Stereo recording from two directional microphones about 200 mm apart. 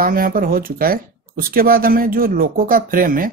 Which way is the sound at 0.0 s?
45° right (ahead or behind).